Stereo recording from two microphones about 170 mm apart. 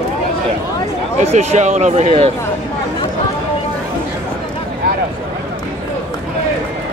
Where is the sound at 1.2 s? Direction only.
40° right (ahead or behind).